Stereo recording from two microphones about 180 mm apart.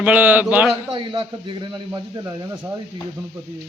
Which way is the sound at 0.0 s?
10° right (ahead or behind).